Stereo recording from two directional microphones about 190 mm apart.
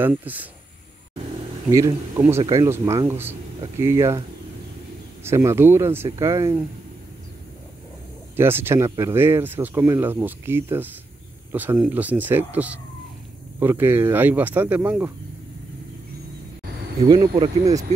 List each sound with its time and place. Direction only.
0.0 s speech: 10° right (ahead or behind)
1.7 s speech: 15° right (ahead or behind)
5.2 s speech: 15° right (ahead or behind)
8.4 s speech: 10° right (ahead or behind)
17.1 s speech: 20° right (ahead or behind)